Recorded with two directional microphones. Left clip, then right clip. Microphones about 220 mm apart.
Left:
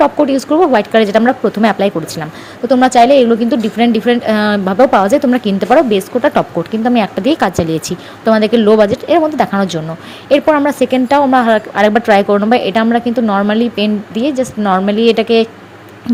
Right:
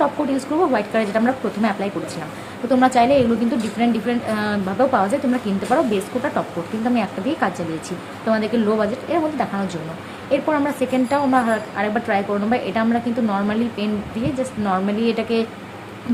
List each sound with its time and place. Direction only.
0.0 s a woman's voice: 30° left (ahead or behind)